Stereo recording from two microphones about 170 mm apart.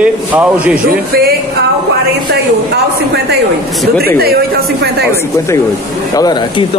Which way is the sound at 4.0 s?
65° right (ahead or behind).